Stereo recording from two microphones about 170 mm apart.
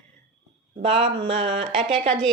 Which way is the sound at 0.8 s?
35° right (ahead or behind).